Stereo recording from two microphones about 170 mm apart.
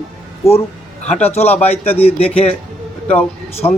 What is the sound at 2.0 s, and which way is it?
Speech, 35° left (ahead or behind).